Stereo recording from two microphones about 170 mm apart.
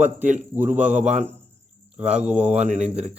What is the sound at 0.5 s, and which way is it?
Speech, 10° right (ahead or behind).